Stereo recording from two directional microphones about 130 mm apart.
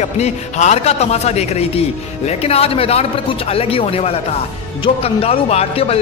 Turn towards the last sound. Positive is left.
turn(degrees=50)  # may be behind; listen again after turning